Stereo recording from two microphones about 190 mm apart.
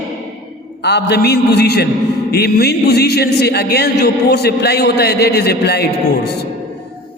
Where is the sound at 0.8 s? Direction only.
60° left (ahead or behind).